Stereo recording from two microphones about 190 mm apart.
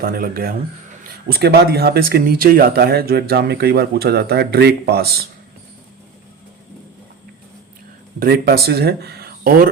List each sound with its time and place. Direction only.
0.0 s speech: 50° right (ahead or behind)
8.2 s speech: 55° right (ahead or behind)